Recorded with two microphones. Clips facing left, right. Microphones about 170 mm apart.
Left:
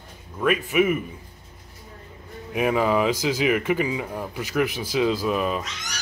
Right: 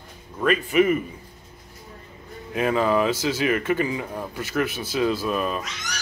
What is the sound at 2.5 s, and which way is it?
Speech, 15° left (ahead or behind).